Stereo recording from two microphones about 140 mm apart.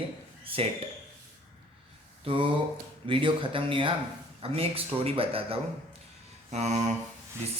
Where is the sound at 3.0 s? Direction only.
40° right (ahead or behind).